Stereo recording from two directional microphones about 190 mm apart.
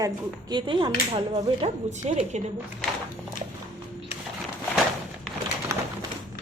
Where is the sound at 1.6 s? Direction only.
35° right (ahead or behind).